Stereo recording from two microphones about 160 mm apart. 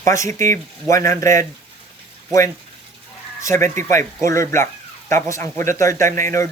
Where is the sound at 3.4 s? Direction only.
20° left (ahead or behind).